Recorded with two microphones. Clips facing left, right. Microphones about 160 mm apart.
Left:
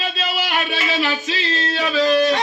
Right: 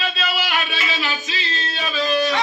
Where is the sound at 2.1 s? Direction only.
50° left (ahead or behind).